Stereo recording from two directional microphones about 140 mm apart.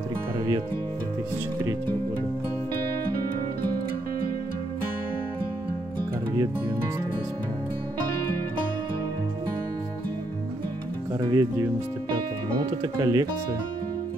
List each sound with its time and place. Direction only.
11.1 s speech: 25° right (ahead or behind)
12.8 s speech: 25° right (ahead or behind)